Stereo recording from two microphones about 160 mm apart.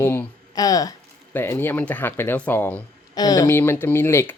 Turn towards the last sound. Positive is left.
turn(degrees=15)  # may be behind; listen again after turning